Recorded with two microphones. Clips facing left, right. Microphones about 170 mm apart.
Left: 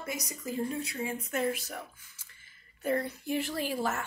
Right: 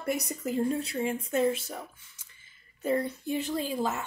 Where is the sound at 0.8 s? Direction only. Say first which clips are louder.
Right 5 dB; 25° right (ahead or behind).